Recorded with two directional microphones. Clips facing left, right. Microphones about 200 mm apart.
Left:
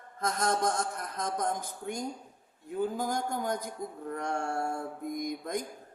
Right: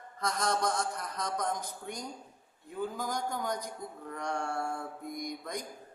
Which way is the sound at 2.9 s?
50° left (ahead or behind).